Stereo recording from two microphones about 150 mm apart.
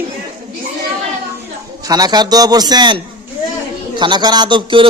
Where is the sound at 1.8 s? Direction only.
25° right (ahead or behind).